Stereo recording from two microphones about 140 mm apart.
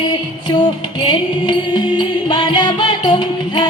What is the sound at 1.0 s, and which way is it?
Music, 30° left (ahead or behind).